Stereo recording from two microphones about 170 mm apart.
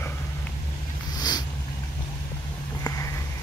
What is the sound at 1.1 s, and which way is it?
Cat, 25° left (ahead or behind).